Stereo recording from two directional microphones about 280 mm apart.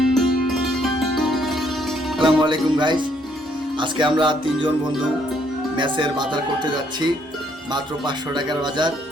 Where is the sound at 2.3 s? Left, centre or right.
Centre.